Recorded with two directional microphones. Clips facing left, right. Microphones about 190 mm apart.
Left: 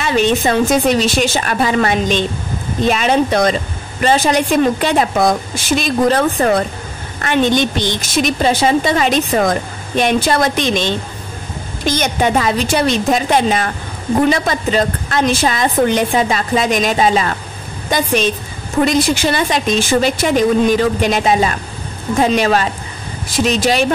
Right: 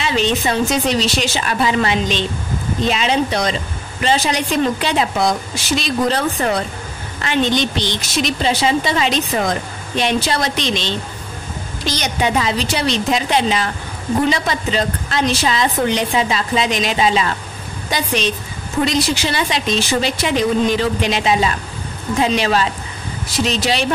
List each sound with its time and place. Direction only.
0.0 s a woman's voice: 50° left (ahead or behind)